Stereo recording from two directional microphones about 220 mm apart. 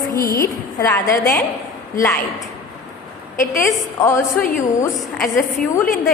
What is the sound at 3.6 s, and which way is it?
Speech, 15° left (ahead or behind).